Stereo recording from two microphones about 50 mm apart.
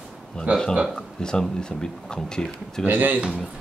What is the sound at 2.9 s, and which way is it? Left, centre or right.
Speech, right.